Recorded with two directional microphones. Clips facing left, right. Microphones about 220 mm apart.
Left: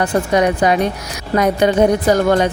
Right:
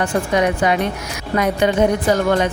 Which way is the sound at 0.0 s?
35° left (ahead or behind).